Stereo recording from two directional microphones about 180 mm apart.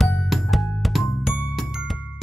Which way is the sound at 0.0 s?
Centre (ahead or behind).